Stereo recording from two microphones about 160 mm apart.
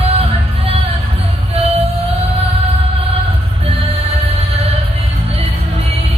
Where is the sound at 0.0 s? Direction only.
40° right (ahead or behind).